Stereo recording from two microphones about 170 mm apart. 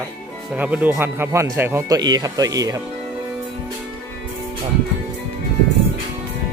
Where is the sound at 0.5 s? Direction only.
10° right (ahead or behind).